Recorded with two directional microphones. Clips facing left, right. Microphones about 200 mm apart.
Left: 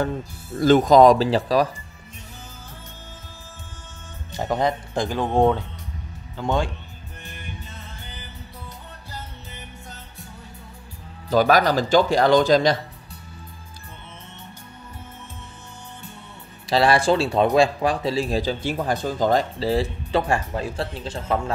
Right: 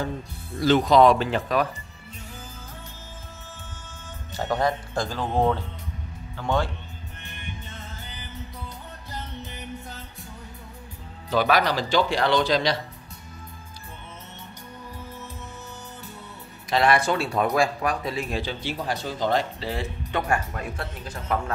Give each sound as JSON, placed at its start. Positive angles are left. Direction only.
{"t": 0.6, "sound": "speech", "side_deg": 45}
{"t": 4.3, "sound": "speech", "side_deg": 15}
{"t": 11.2, "sound": "speech", "side_deg": 40}
{"t": 16.6, "sound": "speech", "side_deg": 30}